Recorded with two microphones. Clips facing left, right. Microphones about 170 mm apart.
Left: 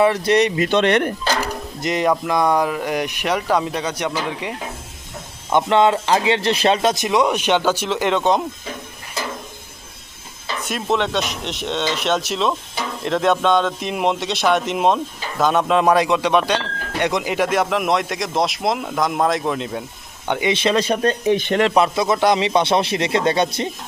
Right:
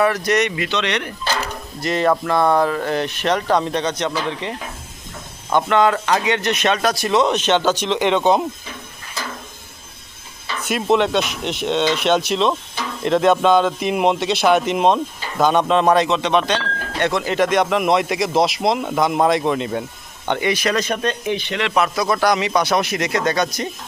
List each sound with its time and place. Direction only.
0.0 s speech: 25° left (ahead or behind)
0.7 s speech: 50° left (ahead or behind)
1.4 s speech: 15° left (ahead or behind); by 8.4 s centre (ahead or behind)
10.6 s a man's voice: centre (ahead or behind)
20.5 s speech: 25° left (ahead or behind)
21.3 s speech: 50° left (ahead or behind)
21.8 s speech: 25° left (ahead or behind)